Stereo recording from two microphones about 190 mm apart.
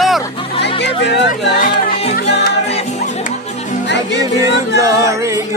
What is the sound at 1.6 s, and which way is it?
Music, 50° left (ahead or behind).